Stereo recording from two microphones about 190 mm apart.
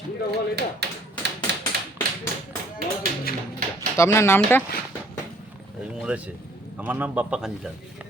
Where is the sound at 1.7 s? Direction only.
60° right (ahead or behind).